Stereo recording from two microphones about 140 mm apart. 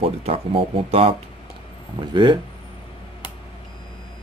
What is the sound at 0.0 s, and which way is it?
Speech, 40° right (ahead or behind).